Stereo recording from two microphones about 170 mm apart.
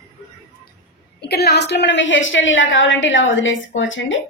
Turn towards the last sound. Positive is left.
turn(degrees=90)